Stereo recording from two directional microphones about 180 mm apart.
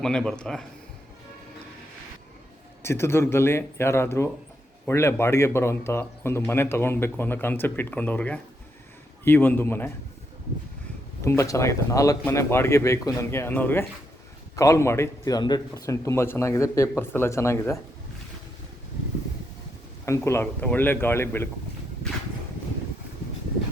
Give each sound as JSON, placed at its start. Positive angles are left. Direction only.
{"t": 0.0, "sound": "speech", "side_deg": 5}
{"t": 2.8, "sound": "speech", "side_deg": 15}
{"t": 11.2, "sound": "speech", "side_deg": 15}
{"t": 20.1, "sound": "speech", "side_deg": 15}